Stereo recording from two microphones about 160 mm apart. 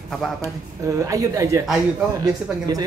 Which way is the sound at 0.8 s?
20° right (ahead or behind).